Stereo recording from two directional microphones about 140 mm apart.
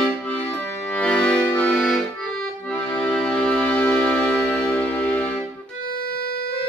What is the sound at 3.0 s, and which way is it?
Music, 10° left (ahead or behind).